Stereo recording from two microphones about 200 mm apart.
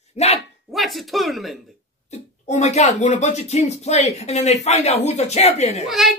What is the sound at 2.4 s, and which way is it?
Speech, 35° left (ahead or behind).